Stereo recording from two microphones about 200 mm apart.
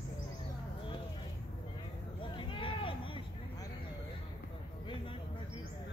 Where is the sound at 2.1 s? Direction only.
25° left (ahead or behind).